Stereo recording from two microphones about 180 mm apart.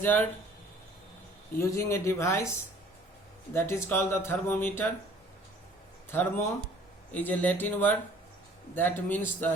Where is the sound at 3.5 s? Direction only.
15° left (ahead or behind).